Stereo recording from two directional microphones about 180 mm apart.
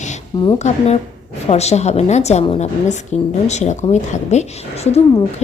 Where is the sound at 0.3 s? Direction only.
20° left (ahead or behind).